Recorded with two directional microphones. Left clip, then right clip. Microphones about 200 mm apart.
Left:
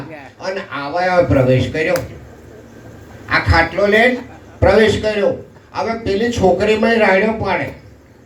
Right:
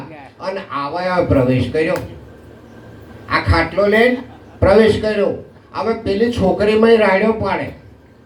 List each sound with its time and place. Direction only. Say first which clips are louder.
0.3 s speech: right 1 dB; 25° right (ahead or behind)
3.2 s speech: left 2 dB; 25° right (ahead or behind)